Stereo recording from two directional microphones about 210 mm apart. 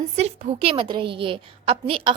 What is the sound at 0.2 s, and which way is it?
A woman's voice, 30° right (ahead or behind).